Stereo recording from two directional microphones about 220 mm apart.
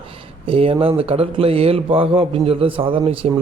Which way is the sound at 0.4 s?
25° right (ahead or behind).